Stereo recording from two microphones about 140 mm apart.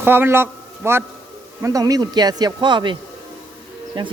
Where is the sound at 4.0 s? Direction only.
35° right (ahead or behind).